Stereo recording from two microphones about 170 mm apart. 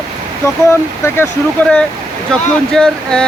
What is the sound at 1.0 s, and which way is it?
Speech, 15° left (ahead or behind).